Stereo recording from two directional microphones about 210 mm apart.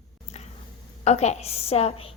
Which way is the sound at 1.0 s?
30° left (ahead or behind).